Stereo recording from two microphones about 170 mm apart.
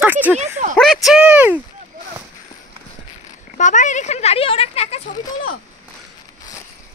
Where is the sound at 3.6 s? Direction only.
45° left (ahead or behind).